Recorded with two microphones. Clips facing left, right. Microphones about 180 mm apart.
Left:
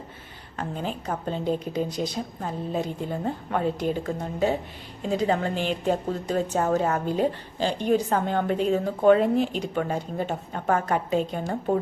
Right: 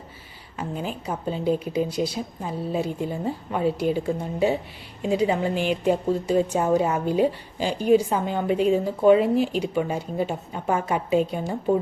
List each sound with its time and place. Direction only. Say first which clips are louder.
0.5 s a woman's voice: right 1 dB; 5° right (ahead or behind)